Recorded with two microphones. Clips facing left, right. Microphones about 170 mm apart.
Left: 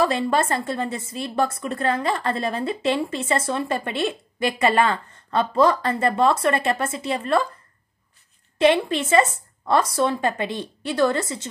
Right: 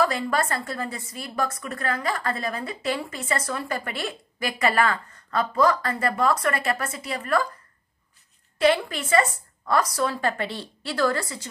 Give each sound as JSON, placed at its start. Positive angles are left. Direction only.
{"t": 0.0, "sound": "a woman's voice", "side_deg": 25}
{"t": 8.5, "sound": "a woman's voice", "side_deg": 25}